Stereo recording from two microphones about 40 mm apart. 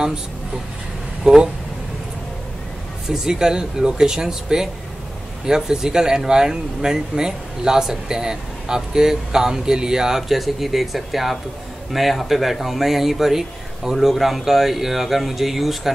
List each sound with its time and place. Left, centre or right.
1.3 s speech: centre
3.1 s speech: centre